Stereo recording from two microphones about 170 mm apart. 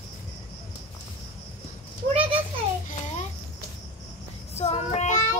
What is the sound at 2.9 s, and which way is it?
Babbling, 45° left (ahead or behind).